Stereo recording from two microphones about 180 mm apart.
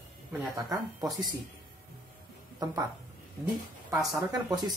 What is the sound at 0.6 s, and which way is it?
Speech, 20° right (ahead or behind).